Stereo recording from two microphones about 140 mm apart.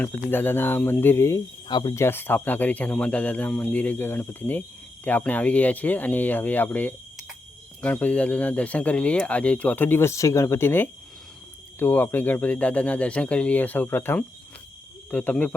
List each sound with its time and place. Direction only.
0.0 s speech: 15° left (ahead or behind)
1.6 s speech: 35° left (ahead or behind)
1.9 s speech: 20° left (ahead or behind)